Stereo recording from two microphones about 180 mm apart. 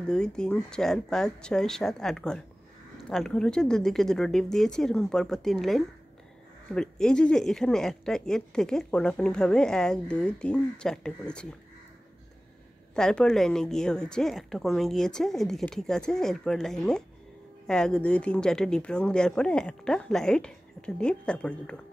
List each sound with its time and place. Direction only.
0.0 s speech: 5° left (ahead or behind)
12.9 s speech: 5° left (ahead or behind)